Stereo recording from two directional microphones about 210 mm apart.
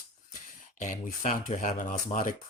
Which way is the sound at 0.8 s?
35° left (ahead or behind).